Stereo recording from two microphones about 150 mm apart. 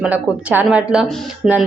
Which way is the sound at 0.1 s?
10° right (ahead or behind).